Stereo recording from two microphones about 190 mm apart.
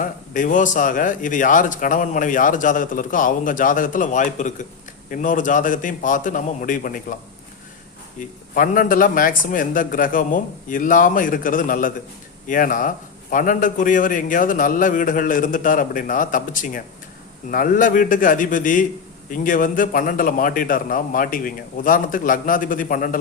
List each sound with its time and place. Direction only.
0.0 s a man's voice: 45° left (ahead or behind)
8.5 s a man's voice: 45° left (ahead or behind)